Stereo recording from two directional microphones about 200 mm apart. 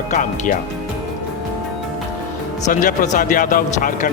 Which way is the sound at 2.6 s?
40° left (ahead or behind).